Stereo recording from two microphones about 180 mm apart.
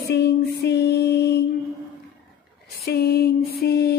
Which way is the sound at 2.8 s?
60° left (ahead or behind).